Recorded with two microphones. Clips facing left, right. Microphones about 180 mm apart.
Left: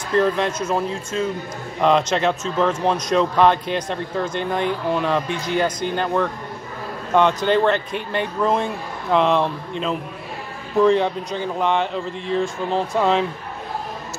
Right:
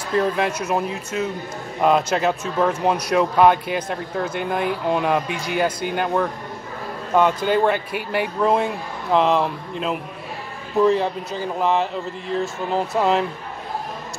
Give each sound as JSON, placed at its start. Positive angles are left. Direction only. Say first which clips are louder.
{"t": 0.1, "sound": "speech", "louder": "left 2 dB", "side_deg": -10}